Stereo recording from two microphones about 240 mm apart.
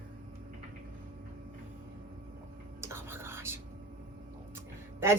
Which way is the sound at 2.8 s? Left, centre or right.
Centre.